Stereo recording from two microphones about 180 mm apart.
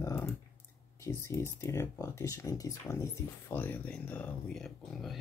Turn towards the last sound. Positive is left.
turn(degrees=0)  # may be behind; listen again after turning